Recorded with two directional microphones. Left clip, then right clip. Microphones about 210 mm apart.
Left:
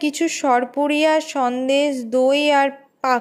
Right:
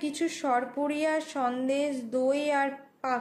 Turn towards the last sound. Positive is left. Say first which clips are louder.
# left 11 dB
turn(degrees=40)  # may be behind; listen again after turning